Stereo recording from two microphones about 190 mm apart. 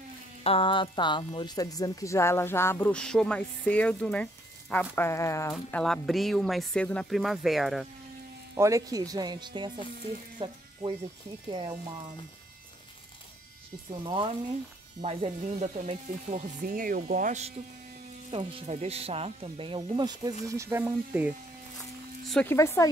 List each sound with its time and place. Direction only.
0.4 s a woman's voice: 30° left (ahead or behind)
5.5 s speech: 5° left (ahead or behind)
8.5 s speech: 15° right (ahead or behind)
14.0 s speech: 25° right (ahead or behind); by 21.3 s 10° right (ahead or behind)
22.2 s a sound: centre (ahead or behind)
22.5 s a woman's voice: 15° left (ahead or behind)